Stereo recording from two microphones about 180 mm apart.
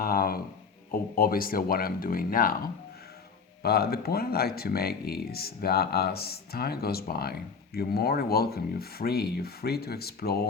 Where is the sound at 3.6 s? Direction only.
60° left (ahead or behind).